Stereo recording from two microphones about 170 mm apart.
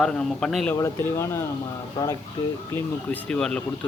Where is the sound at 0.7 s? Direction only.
15° left (ahead or behind).